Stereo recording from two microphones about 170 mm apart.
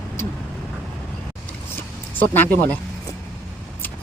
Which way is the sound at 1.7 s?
10° left (ahead or behind).